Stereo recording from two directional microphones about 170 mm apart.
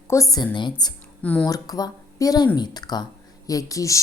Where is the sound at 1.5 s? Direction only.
20° left (ahead or behind).